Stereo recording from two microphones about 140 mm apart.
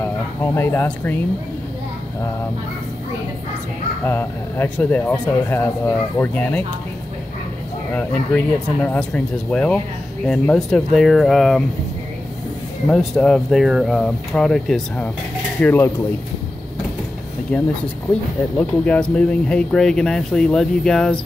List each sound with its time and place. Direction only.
0.0 s speech: 15° left (ahead or behind)
4.0 s speech: 15° left (ahead or behind)
7.9 s speech: 10° left (ahead or behind)
12.9 s speech: 5° left (ahead or behind)
15.6 s speech: 15° left (ahead or behind)
17.5 s speech: 10° left (ahead or behind)